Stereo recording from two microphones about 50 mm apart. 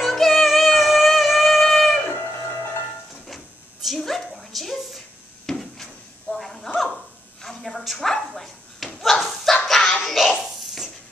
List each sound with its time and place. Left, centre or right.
0.0 s music: centre
2.0 s music: left
3.8 s a sound: centre